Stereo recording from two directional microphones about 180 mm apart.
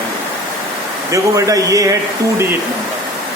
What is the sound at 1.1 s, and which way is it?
Speech, 20° right (ahead or behind).